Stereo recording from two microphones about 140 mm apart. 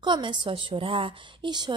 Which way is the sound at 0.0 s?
35° right (ahead or behind).